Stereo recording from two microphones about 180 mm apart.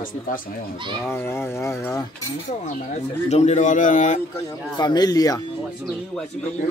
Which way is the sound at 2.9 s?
40° left (ahead or behind).